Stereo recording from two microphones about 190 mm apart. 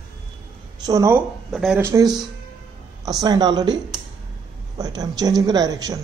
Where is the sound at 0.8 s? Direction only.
15° right (ahead or behind).